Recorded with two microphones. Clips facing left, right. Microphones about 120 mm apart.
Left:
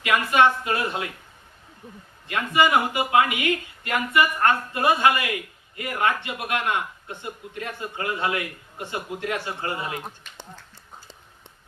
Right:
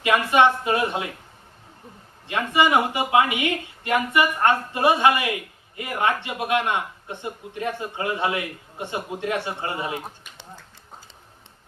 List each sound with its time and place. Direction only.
0.0 s a man's voice: 25° right (ahead or behind)
2.2 s a man's voice: 25° right (ahead or behind)